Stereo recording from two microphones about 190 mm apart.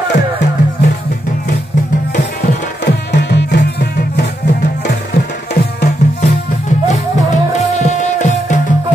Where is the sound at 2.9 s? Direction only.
60° left (ahead or behind).